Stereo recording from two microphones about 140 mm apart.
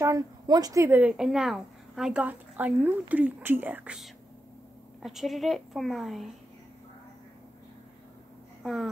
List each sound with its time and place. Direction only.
0.0 s a woman's voice: 25° right (ahead or behind); by 6.3 s centre (ahead or behind)
8.6 s a woman's voice: centre (ahead or behind)